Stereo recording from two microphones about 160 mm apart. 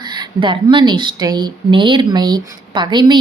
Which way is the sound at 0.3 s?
30° right (ahead or behind).